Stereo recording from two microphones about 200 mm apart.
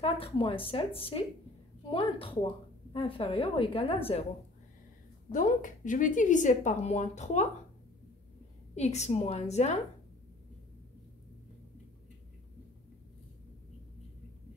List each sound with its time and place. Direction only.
0.0 s speech: 25° left (ahead or behind)
5.3 s a woman's voice: 40° left (ahead or behind)
8.7 s a woman's voice: 35° left (ahead or behind)